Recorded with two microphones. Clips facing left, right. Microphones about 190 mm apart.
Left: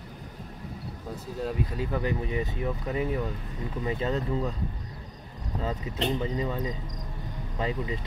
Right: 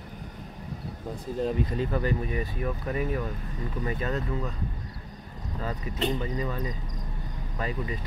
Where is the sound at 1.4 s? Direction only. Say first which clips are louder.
Right 3 dB; 5° left (ahead or behind).